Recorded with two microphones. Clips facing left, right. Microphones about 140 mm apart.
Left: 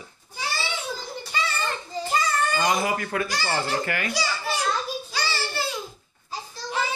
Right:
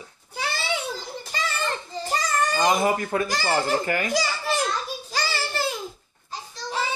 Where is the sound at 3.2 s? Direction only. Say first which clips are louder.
Right 2 dB; 45° right (ahead or behind).